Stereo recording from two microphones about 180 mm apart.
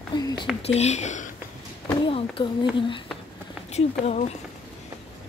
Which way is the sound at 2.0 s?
30° left (ahead or behind).